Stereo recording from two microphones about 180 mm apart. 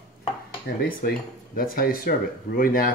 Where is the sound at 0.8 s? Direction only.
55° left (ahead or behind).